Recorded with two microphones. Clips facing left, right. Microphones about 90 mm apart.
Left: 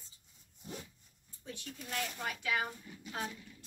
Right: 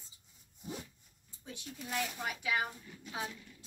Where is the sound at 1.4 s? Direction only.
10° right (ahead or behind).